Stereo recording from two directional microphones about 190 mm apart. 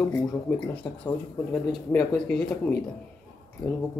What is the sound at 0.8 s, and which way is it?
Speech, 5° left (ahead or behind).